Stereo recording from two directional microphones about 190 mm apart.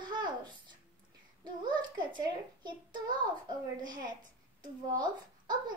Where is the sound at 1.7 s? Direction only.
25° right (ahead or behind).